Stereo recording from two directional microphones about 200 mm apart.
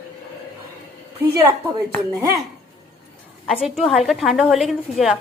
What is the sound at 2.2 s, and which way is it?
Speech, 20° right (ahead or behind).